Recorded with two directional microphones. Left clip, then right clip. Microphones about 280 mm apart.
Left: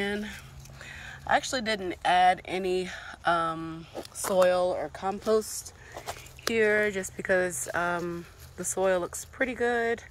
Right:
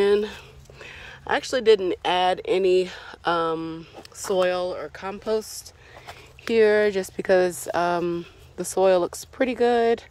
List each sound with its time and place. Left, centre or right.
0.8 s speech: centre
6.5 s speech: right